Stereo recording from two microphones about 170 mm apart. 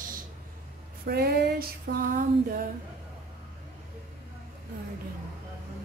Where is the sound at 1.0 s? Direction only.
65° right (ahead or behind).